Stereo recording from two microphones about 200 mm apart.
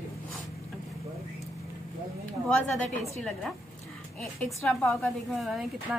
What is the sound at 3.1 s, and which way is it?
Speech, 5° left (ahead or behind).